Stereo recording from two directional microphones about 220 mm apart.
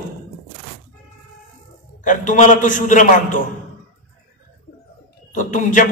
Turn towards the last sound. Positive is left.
turn(degrees=35)  # may be behind; listen again after turning